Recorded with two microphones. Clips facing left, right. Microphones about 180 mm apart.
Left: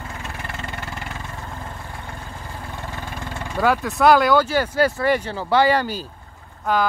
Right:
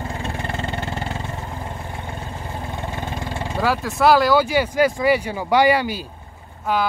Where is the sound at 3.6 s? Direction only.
Centre (ahead or behind).